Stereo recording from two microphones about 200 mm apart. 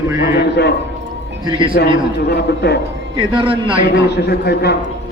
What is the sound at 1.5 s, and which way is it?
Speech, 25° right (ahead or behind).